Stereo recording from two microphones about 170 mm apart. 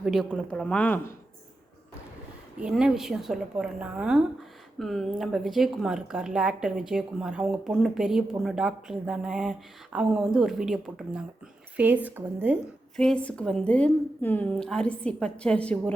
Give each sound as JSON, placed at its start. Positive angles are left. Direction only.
{"t": 0.0, "sound": "a woman's voice", "side_deg": 0}
{"t": 2.6, "sound": "a woman's voice", "side_deg": -5}
{"t": 13.0, "sound": "a woman's voice", "side_deg": 5}